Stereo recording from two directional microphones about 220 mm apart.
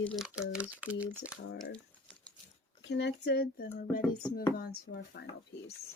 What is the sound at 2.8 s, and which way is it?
Speech, 50° left (ahead or behind).